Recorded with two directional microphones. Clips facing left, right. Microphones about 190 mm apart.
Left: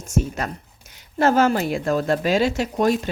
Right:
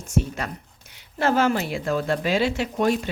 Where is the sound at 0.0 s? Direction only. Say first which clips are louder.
Left 2 dB; 45° left (ahead or behind).